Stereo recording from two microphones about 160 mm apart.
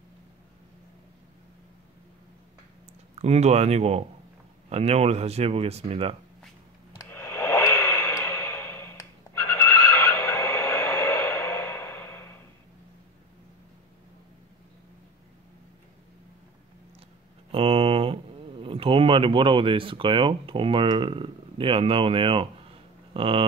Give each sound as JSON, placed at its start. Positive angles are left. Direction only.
{"t": 3.2, "sound": "speech", "side_deg": -40}
{"t": 7.0, "sound": "a sound", "side_deg": 15}
{"t": 17.5, "sound": "speech", "side_deg": -35}